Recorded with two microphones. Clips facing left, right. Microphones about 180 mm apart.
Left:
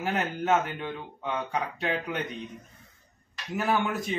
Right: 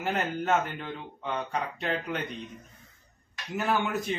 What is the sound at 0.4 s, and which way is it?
Speech, 5° left (ahead or behind).